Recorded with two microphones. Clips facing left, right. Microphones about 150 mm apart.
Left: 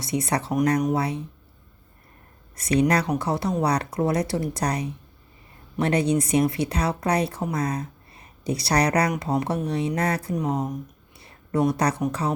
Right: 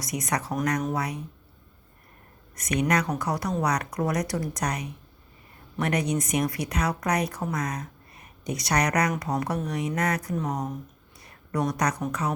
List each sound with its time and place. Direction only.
0.0 s speech: 30° left (ahead or behind)
2.6 s speech: 30° left (ahead or behind)
11.2 s a sound: 25° left (ahead or behind)